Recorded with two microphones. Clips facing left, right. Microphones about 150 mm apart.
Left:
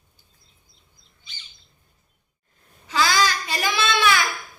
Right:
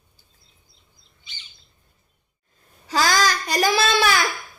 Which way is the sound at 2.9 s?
40° right (ahead or behind).